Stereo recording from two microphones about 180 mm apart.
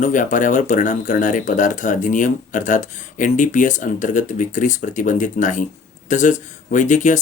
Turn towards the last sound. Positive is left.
turn(degrees=45)  # may be behind; listen again after turning